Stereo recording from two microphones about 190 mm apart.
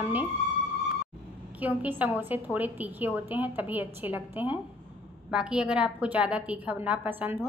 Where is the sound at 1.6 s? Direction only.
10° right (ahead or behind).